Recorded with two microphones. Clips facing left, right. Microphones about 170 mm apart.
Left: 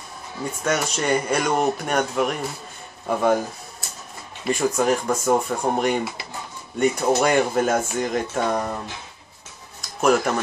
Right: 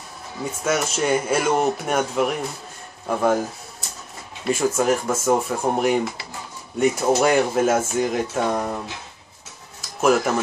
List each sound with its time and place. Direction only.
0.4 s speech: 5° right (ahead or behind)
4.5 s speech: 5° right (ahead or behind)
9.8 s tick-tock: 5° right (ahead or behind)